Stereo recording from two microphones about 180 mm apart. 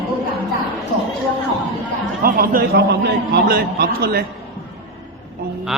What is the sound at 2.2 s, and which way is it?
A man's voice, 55° right (ahead or behind).